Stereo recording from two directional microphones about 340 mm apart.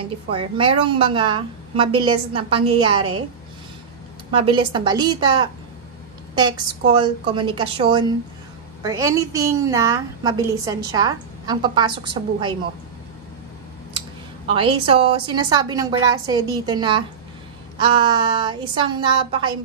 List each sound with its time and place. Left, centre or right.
0.3 s a woman's voice: centre
4.3 s a woman's voice: centre
14.5 s a woman's voice: centre